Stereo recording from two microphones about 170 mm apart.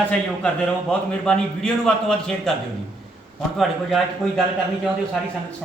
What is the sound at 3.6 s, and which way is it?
Speech, centre (ahead or behind).